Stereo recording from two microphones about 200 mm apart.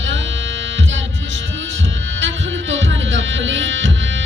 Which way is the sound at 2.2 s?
70° right (ahead or behind).